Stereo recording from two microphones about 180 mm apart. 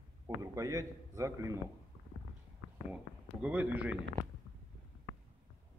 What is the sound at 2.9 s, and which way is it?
A man's voice, 5° right (ahead or behind).